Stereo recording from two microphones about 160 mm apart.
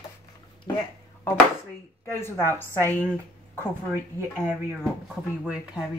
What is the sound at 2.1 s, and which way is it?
Speech, 15° left (ahead or behind).